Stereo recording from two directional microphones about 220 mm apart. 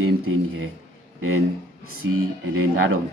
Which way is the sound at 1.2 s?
75° right (ahead or behind).